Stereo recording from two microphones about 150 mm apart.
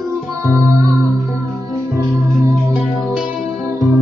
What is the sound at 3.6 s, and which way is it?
Music, 20° right (ahead or behind).